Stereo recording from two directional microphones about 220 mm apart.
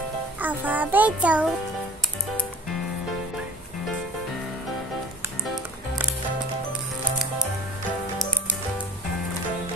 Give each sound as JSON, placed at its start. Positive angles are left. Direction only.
{"t": 0.4, "sound": "music", "side_deg": -10}